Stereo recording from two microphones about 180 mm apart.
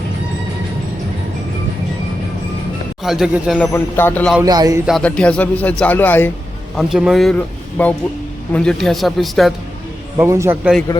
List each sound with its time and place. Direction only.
3.0 s speech: centre (ahead or behind)
3.7 s speech: 10° left (ahead or behind)
4.4 s speech: 20° right (ahead or behind)
4.9 s speech: 5° left (ahead or behind)
6.7 s speech: centre (ahead or behind)
10.2 s a man's voice: 15° right (ahead or behind)
10.6 s speech: 5° right (ahead or behind)